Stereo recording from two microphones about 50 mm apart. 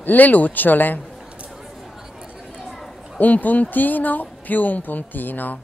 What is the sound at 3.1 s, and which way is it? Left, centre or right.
A man's voice, left.